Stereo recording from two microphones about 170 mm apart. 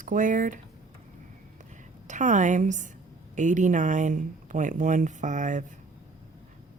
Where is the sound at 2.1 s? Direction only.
45° right (ahead or behind).